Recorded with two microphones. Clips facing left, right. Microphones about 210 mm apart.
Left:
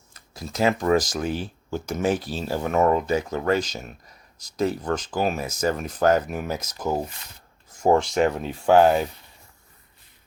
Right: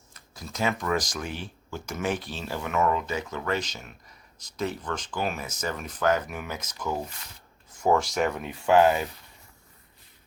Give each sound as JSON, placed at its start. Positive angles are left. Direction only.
{"t": 0.3, "sound": "speech", "side_deg": 35}
{"t": 7.8, "sound": "speech", "side_deg": 30}